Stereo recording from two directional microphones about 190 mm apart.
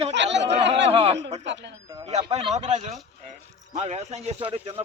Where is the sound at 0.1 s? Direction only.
70° right (ahead or behind).